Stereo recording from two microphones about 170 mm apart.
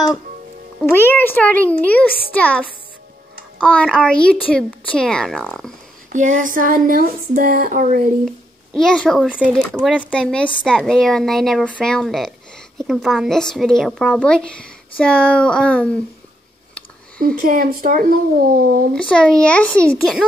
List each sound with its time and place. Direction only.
0.8 s a child's voice: 15° left (ahead or behind)
3.6 s speech: 5° left (ahead or behind)
6.1 s a sound: 50° right (ahead or behind)
8.3 s a child's voice: 5° left (ahead or behind)
17.2 s speech: 60° right (ahead or behind)
18.9 s speech: 5° left (ahead or behind)